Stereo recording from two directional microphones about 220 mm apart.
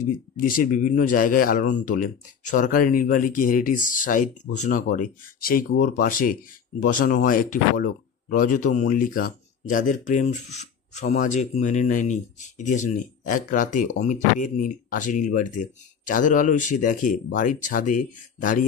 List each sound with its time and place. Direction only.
0.4 s speech: 40° left (ahead or behind)